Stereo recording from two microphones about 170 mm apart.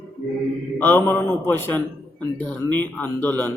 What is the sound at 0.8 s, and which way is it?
A man's voice, 10° left (ahead or behind).